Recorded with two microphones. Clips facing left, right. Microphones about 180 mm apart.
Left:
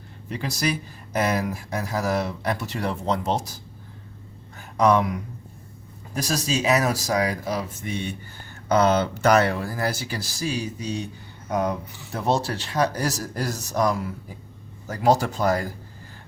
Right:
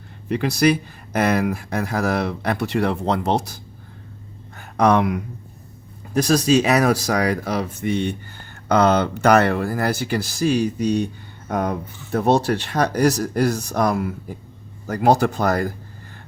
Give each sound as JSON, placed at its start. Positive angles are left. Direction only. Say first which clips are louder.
{"t": 0.3, "sound": "speech", "louder": "right 9 dB", "side_deg": -65}
{"t": 4.5, "sound": "a sound", "louder": "right 2 dB", "side_deg": -65}
{"t": 6.1, "sound": "speech", "louder": "right 9 dB", "side_deg": -60}